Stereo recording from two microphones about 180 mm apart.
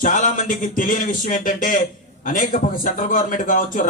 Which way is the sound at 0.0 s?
45° left (ahead or behind).